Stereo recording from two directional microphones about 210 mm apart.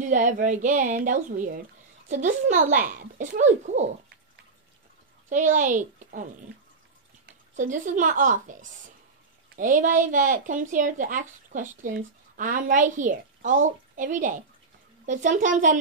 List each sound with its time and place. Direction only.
0.0 s speech: 40° right (ahead or behind)
5.3 s speech: 35° right (ahead or behind)
7.5 s speech: 35° right (ahead or behind)